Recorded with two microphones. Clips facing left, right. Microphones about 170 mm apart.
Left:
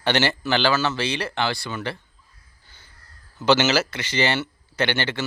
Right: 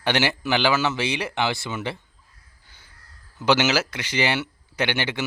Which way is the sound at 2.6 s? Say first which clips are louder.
Left 1 dB; 10° right (ahead or behind).